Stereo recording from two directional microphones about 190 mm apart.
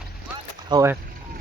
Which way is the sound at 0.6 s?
20° right (ahead or behind).